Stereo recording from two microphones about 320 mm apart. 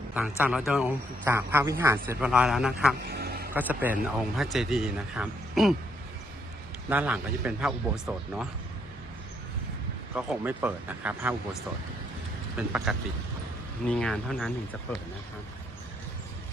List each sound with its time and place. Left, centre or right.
0.1 s speech: centre
3.1 s a sound: right
3.5 s speech: centre
6.9 s speech: centre
10.2 s speech: centre
12.5 s speech: centre